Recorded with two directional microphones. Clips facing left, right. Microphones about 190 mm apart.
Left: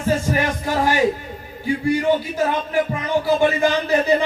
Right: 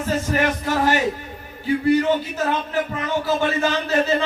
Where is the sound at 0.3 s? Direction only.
15° left (ahead or behind).